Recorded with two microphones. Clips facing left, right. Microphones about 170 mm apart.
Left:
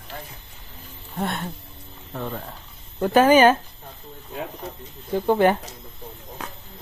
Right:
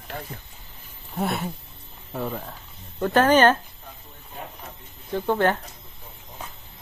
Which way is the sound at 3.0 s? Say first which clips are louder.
Left 3 dB; 10° left (ahead or behind).